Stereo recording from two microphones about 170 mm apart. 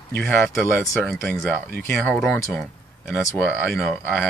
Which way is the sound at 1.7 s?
10° left (ahead or behind).